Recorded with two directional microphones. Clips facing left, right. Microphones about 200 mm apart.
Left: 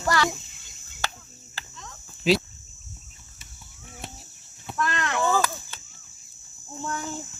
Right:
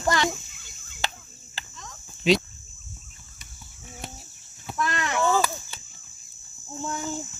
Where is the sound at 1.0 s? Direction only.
20° right (ahead or behind).